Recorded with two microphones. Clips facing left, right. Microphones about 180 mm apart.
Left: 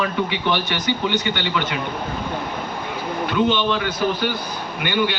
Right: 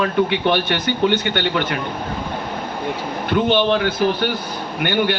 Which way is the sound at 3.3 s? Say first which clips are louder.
Right 4 dB; 60° right (ahead or behind).